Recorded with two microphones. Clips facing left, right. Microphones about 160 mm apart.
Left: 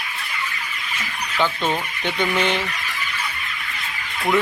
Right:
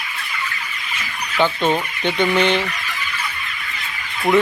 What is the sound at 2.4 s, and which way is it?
Speech, 5° left (ahead or behind).